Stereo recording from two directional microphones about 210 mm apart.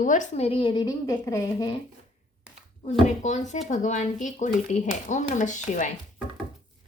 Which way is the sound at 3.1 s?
35° left (ahead or behind).